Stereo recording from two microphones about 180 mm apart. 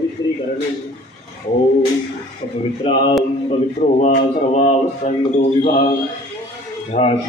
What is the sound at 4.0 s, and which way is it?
Speech, 40° left (ahead or behind).